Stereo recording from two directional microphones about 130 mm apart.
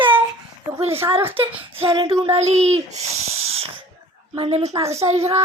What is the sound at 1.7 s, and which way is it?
Speech, 40° right (ahead or behind).